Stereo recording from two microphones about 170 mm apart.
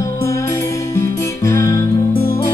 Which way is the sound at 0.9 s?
15° left (ahead or behind).